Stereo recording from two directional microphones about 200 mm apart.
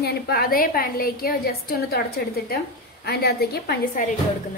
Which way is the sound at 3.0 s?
50° left (ahead or behind).